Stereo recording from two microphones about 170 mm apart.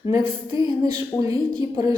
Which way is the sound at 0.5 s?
20° right (ahead or behind).